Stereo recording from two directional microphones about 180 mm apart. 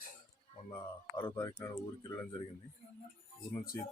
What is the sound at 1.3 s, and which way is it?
Speech, 15° left (ahead or behind).